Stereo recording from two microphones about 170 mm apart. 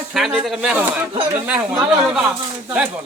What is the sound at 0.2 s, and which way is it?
A man's voice, 5° right (ahead or behind).